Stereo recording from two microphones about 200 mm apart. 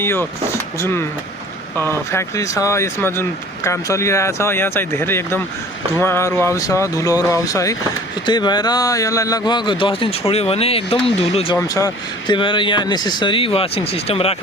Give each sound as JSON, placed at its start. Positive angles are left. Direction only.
{"t": 0.0, "sound": "speech", "side_deg": 10}
{"t": 2.1, "sound": "a man's voice", "side_deg": 15}
{"t": 11.5, "sound": "a man's voice", "side_deg": 15}